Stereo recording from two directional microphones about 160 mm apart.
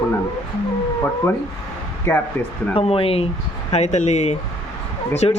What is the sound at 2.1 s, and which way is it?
Speech, 15° left (ahead or behind).